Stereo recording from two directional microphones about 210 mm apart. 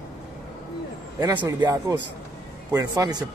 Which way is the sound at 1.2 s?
20° right (ahead or behind).